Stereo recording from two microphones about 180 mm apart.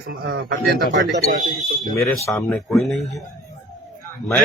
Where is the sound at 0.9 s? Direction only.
75° right (ahead or behind).